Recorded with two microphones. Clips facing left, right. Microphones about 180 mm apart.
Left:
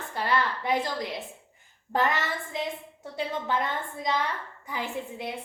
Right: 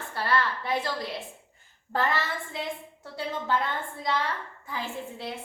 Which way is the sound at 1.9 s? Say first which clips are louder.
Left 1 dB; 15° left (ahead or behind).